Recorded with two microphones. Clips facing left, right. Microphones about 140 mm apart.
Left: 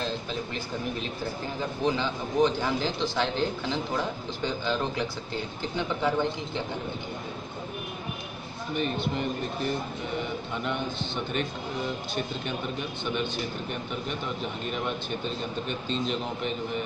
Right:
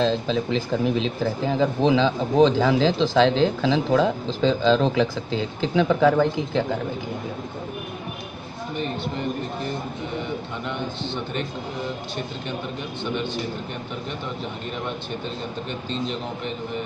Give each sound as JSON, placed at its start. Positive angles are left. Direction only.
{"t": 0.0, "sound": "speech", "side_deg": -90}